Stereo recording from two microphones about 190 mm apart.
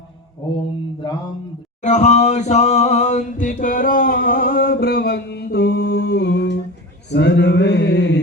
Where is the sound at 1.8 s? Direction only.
40° left (ahead or behind); by 6.5 s 65° left (ahead or behind).